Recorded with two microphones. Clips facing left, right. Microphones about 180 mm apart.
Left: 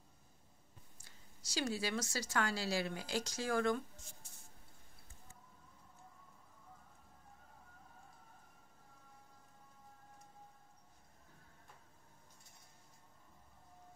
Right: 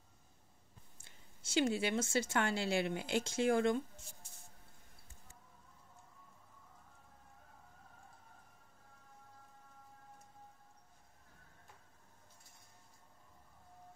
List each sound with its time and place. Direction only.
0.9 s speech: 25° right (ahead or behind)